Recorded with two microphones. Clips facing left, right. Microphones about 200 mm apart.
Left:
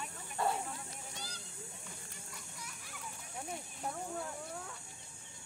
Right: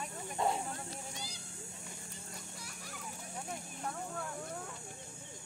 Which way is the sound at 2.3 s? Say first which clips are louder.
Right 2 dB; 40° right (ahead or behind).